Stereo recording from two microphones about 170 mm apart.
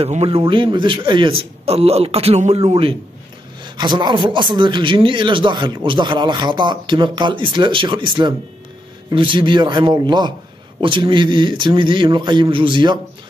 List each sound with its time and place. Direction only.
0.0 s a man's voice: 35° right (ahead or behind)